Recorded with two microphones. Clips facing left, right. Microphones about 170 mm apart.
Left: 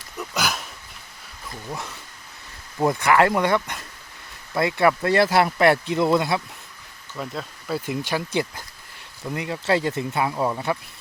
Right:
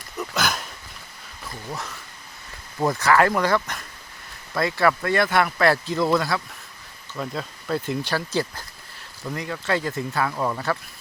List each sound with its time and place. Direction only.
0.2 s a sound: 5° left (ahead or behind)
2.7 s speech: 20° left (ahead or behind)
7.2 s speech: 5° left (ahead or behind)
9.3 s speech: 25° left (ahead or behind)